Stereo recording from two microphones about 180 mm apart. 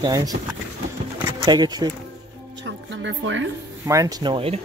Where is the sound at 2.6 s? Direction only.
85° right.